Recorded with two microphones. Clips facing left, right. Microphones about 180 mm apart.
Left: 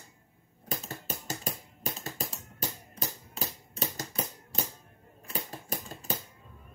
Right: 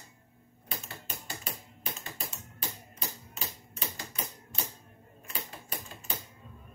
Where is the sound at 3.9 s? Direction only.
40° left (ahead or behind).